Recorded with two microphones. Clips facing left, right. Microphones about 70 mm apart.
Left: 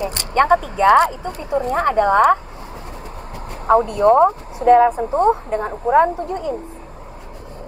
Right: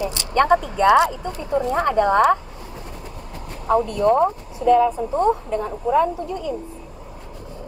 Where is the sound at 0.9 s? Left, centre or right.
Left.